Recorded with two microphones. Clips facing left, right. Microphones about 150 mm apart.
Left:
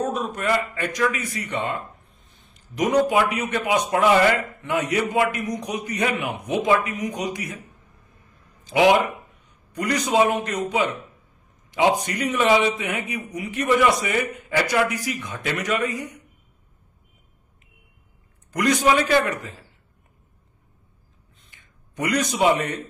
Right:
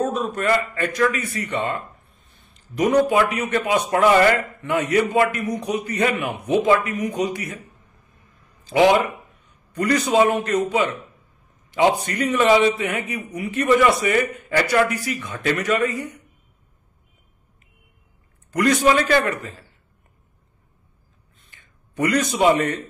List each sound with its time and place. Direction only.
0.1 s a man's voice: 15° left (ahead or behind)
8.6 s a man's voice: 15° left (ahead or behind)
12.0 s a man's voice: 15° left (ahead or behind)
18.5 s a man's voice: 15° left (ahead or behind)
21.5 s a sound: 15° left (ahead or behind)